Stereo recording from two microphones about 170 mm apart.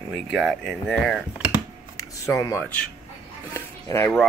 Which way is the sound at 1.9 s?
20° left (ahead or behind).